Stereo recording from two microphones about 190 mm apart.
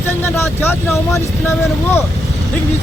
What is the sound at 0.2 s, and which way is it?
Speech, 10° left (ahead or behind).